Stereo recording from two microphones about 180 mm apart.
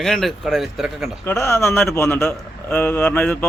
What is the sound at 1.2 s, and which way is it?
A man's voice, 15° left (ahead or behind).